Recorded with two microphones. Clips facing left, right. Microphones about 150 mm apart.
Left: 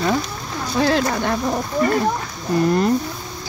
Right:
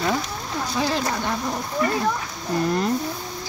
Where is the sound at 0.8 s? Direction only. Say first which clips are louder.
Left 7 dB; 70° left (ahead or behind).